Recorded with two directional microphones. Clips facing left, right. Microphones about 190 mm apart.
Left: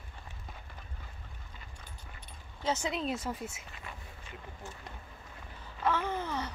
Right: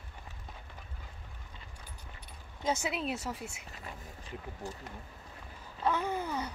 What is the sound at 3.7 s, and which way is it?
Speech, 35° right (ahead or behind).